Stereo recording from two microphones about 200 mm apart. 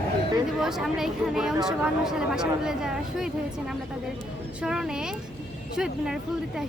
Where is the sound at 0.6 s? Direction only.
Centre (ahead or behind).